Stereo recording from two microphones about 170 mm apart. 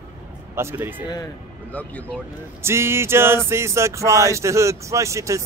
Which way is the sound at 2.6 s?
15° right (ahead or behind).